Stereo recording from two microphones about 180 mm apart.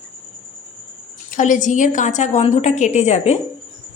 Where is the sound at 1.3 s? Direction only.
45° left (ahead or behind).